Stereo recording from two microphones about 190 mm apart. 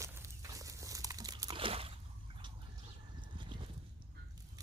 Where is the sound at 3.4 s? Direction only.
25° right (ahead or behind).